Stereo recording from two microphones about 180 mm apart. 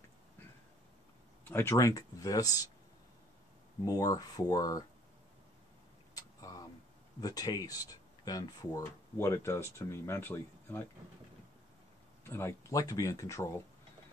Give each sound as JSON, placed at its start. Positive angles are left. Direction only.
{"t": 1.5, "sound": "speech", "side_deg": 15}
{"t": 3.8, "sound": "speech", "side_deg": 20}
{"t": 6.1, "sound": "a sound", "side_deg": 20}
{"t": 7.2, "sound": "speech", "side_deg": 20}
{"t": 12.3, "sound": "speech", "side_deg": 15}